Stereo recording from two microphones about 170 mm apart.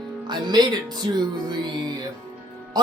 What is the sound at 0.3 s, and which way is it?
Speech, 25° right (ahead or behind).